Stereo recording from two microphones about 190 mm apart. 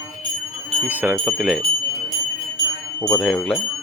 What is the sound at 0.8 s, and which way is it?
Speech, 10° right (ahead or behind).